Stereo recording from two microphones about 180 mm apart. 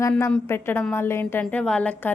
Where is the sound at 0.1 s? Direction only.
5° left (ahead or behind).